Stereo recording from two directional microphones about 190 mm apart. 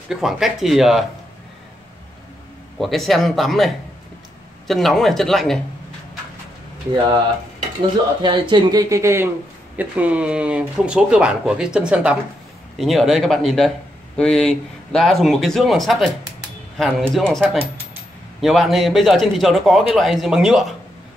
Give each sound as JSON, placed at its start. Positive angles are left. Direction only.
{"t": 0.1, "sound": "speech", "side_deg": 0}
{"t": 2.8, "sound": "speech", "side_deg": 0}
{"t": 8.2, "sound": "speech", "side_deg": -25}